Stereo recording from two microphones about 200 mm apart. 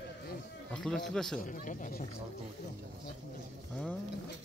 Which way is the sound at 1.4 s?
40° left (ahead or behind).